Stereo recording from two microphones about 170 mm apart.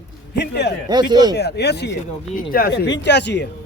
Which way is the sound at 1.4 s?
75° left (ahead or behind).